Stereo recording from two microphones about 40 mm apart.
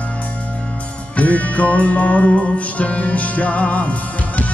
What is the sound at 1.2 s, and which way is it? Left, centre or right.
Music, left.